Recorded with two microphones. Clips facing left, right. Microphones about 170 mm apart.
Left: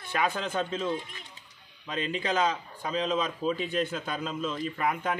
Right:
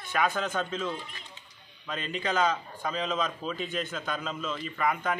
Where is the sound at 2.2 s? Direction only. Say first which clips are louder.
Right 1 dB; 30° left (ahead or behind).